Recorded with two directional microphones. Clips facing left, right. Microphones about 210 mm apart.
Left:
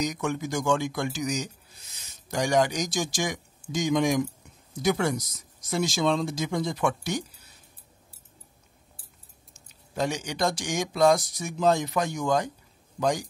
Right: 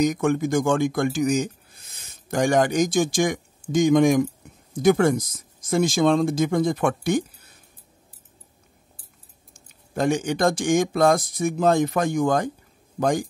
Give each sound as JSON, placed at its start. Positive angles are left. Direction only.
{"t": 0.0, "sound": "speech", "side_deg": -50}
{"t": 9.5, "sound": "speech", "side_deg": -50}